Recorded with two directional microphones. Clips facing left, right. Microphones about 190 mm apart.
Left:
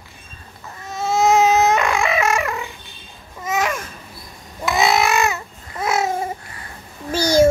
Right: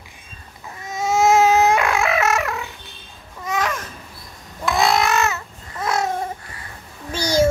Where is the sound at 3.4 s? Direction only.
5° left (ahead or behind).